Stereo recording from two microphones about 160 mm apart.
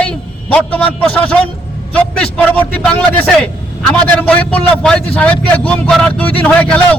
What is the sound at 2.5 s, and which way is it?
A man's voice, 10° left (ahead or behind).